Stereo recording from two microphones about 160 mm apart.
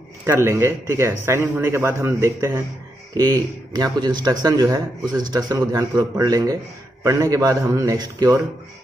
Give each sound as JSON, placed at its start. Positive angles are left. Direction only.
{"t": 0.2, "sound": "a man's voice", "side_deg": -15}